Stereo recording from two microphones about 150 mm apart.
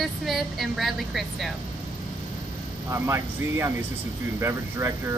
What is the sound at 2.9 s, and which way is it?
Speech, 20° right (ahead or behind).